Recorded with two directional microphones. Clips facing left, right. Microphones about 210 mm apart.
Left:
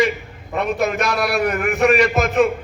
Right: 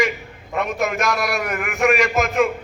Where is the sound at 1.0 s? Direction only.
35° left (ahead or behind).